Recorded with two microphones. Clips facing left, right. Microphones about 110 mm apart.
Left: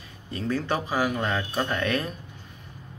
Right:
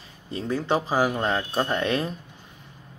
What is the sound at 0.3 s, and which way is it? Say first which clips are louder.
Speech: right 2 dB; 20° right (ahead or behind).